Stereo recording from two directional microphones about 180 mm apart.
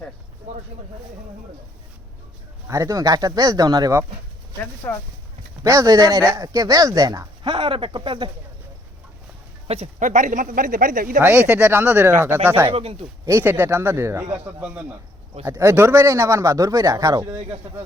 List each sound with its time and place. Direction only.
2.6 s speech: 15° right (ahead or behind)
4.8 s speech: 15° left (ahead or behind)
5.6 s speech: 20° right (ahead or behind)
9.6 s speech: 35° right (ahead or behind)
11.2 s a man's voice: 10° right (ahead or behind)
12.7 s speech: 30° right (ahead or behind)
13.2 s a man's voice: 15° right (ahead or behind)